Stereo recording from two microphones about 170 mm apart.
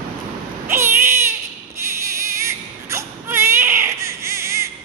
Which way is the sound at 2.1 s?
15° right (ahead or behind).